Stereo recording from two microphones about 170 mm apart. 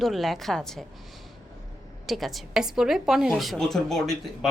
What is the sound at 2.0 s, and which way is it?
A woman's voice, centre (ahead or behind).